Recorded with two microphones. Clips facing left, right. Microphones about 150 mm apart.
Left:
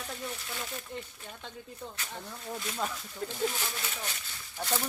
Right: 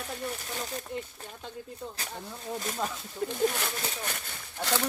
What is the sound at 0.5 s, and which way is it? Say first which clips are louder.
Speech: right 3 dB; 40° right (ahead or behind).